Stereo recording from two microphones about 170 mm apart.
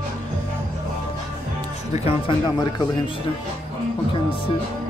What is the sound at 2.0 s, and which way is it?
Speech, 30° left (ahead or behind).